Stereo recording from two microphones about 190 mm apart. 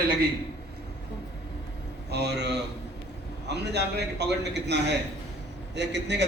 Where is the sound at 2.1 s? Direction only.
60° right (ahead or behind).